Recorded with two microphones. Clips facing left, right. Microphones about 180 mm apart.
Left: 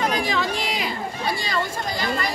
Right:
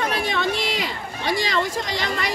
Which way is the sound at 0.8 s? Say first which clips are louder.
Left 1 dB; 90° right.